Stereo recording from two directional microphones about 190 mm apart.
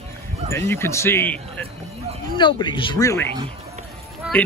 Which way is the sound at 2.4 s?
25° left (ahead or behind).